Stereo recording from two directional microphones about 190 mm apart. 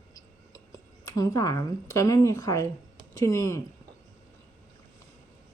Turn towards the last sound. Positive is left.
turn(degrees=15)  # may be behind; listen again after turning